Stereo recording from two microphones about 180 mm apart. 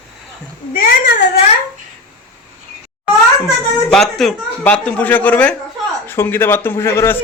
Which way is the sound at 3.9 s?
Centre (ahead or behind).